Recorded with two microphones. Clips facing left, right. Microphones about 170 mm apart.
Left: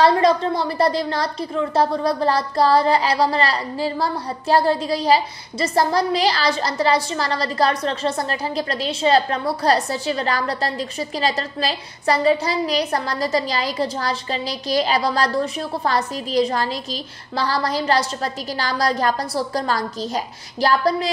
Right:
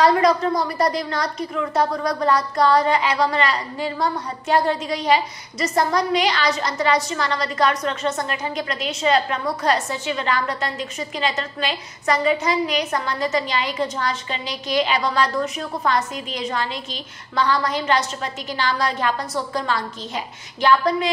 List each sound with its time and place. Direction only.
0.0 s a woman's voice: 30° left (ahead or behind)